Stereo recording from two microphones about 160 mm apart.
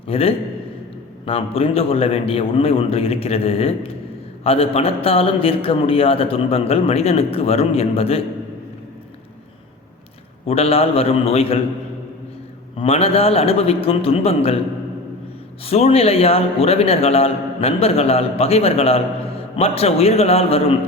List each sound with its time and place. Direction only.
0.1 s a man's voice: 35° left (ahead or behind)
10.4 s a man's voice: 35° left (ahead or behind)
12.7 s a man's voice: 40° left (ahead or behind)
15.6 s a man's voice: 40° left (ahead or behind)